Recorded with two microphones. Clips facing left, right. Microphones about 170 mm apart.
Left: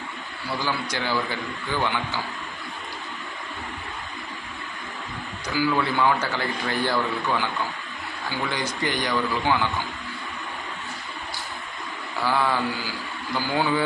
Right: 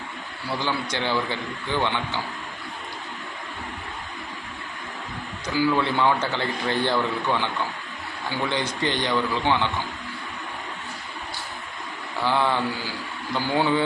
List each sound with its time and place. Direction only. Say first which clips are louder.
0.6 s a man's voice: right 1 dB; 20° right (ahead or behind)
5.5 s a man's voice: right 1 dB; 20° right (ahead or behind)
12.2 s a man's voice: right 1 dB; 20° right (ahead or behind)